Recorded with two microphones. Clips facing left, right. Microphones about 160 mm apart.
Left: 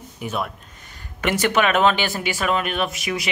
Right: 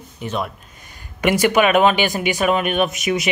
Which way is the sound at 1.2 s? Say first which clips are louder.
Right 4 dB; 10° right (ahead or behind).